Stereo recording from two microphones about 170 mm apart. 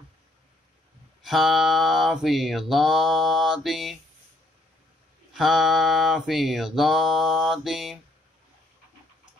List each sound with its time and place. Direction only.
1.2 s mantra: centre (ahead or behind)
5.3 s mantra: centre (ahead or behind)